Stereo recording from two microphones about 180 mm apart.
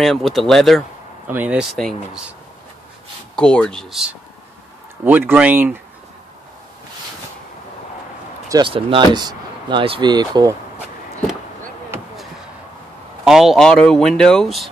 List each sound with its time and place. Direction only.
0.0 s speech: centre (ahead or behind)
3.3 s speech: 5° left (ahead or behind)
5.0 s speech: 10° right (ahead or behind)
8.5 s speech: 25° right (ahead or behind)
13.2 s speech: centre (ahead or behind)